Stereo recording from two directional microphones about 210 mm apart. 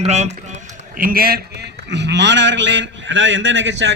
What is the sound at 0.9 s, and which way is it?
Speech, 45° right (ahead or behind).